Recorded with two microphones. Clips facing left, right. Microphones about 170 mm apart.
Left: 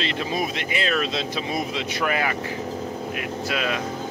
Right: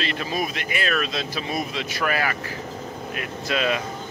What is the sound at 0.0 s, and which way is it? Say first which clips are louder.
Speech: left 1 dB; 25° left (ahead or behind).